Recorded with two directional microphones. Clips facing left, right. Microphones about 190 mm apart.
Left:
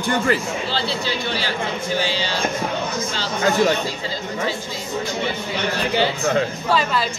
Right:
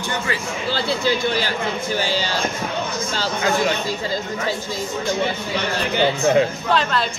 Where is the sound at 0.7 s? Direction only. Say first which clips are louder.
Right 7 dB; 50° right (ahead or behind).